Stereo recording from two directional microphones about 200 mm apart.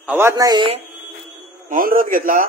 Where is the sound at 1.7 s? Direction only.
45° right (ahead or behind).